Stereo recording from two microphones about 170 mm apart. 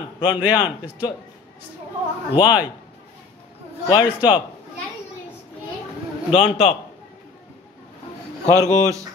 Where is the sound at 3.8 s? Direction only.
25° left (ahead or behind).